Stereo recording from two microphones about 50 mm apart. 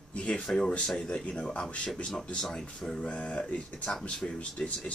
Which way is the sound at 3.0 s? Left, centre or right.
Left.